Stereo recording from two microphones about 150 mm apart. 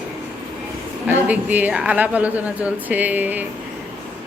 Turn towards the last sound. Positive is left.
turn(degrees=-10)  # may be behind; listen again after turning